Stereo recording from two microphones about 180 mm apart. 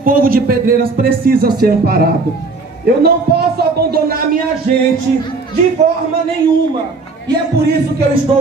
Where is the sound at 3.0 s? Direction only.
60° right (ahead or behind).